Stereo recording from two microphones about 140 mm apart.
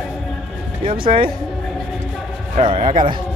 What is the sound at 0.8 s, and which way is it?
Speech, 40° right (ahead or behind).